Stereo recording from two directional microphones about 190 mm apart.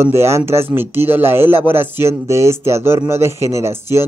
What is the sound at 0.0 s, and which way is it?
Speech, 15° right (ahead or behind).